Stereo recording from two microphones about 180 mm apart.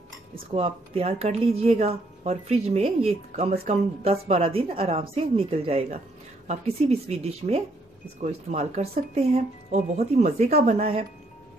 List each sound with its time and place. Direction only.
0.6 s a woman's voice: 35° right (ahead or behind)